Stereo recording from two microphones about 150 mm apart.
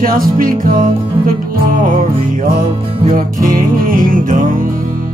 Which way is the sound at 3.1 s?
65° right (ahead or behind).